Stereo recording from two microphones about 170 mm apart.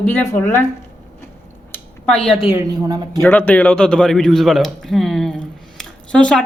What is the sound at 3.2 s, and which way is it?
A man's voice, 10° left (ahead or behind).